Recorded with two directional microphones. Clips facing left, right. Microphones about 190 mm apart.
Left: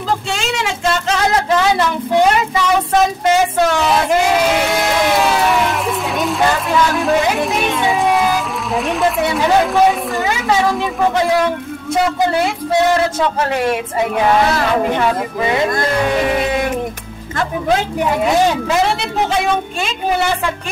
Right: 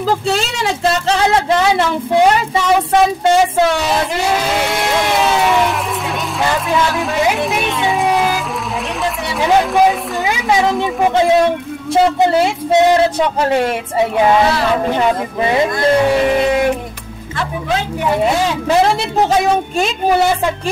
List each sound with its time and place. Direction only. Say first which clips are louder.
0.3 s speech: right 3 dB; 40° right (ahead or behind)
8.0 s music: even; centre (ahead or behind)
9.0 s a sound: left 7 dB; centre (ahead or behind)
9.8 s speech: even; 15° right (ahead or behind)